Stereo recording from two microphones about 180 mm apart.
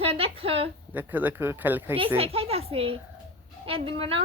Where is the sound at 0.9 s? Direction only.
10° right (ahead or behind).